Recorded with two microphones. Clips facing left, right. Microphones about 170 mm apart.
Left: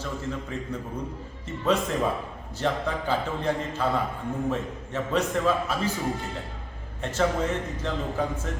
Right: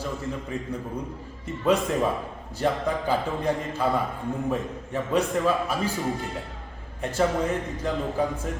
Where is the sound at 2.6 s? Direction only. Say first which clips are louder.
Right 2 dB; 10° right (ahead or behind).